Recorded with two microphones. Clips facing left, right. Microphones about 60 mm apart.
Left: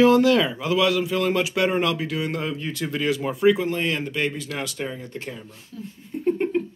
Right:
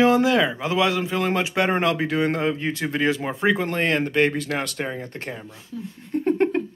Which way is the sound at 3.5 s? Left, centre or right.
Right.